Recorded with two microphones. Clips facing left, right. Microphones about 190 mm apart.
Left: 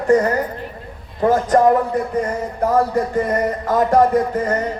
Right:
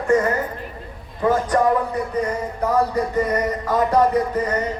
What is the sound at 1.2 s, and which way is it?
Speech, 45° left (ahead or behind).